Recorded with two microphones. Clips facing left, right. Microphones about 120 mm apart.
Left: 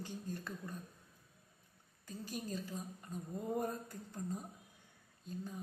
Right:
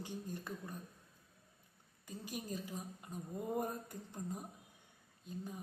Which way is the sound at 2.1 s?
15° right (ahead or behind).